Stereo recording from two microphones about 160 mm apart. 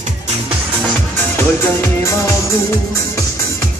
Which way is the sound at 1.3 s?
15° left (ahead or behind).